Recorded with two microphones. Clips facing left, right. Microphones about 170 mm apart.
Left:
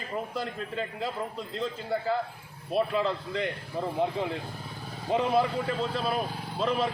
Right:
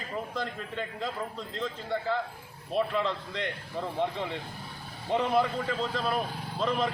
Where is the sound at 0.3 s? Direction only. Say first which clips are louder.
Left 2 dB; 10° left (ahead or behind).